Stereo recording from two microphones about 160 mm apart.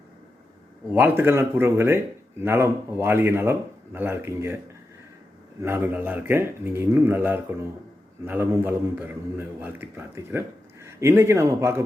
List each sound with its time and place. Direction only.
0.9 s speech: 15° right (ahead or behind)
5.6 s speech: 10° right (ahead or behind)